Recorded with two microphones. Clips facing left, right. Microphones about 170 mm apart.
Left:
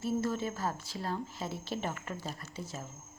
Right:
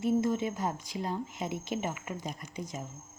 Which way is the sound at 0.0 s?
15° right (ahead or behind).